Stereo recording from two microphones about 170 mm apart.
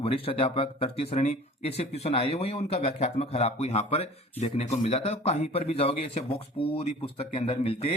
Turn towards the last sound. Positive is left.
turn(degrees=35)  # may be behind; listen again after turning